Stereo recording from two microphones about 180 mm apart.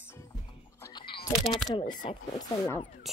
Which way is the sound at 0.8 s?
25° left (ahead or behind).